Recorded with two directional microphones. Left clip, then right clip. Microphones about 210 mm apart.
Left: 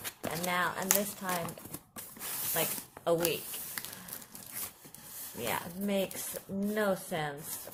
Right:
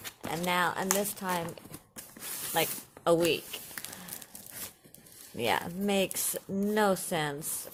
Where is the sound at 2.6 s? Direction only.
50° right (ahead or behind).